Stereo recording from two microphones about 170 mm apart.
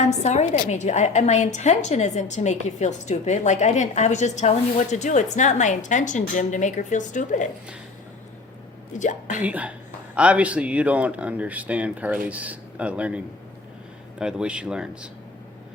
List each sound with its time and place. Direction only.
0.0 s a woman's voice: 40° left (ahead or behind)
9.0 s a woman's voice: 45° left (ahead or behind)
9.4 s speech: 10° right (ahead or behind)